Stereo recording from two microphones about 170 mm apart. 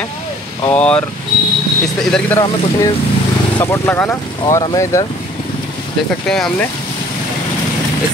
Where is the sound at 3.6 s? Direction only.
15° left (ahead or behind).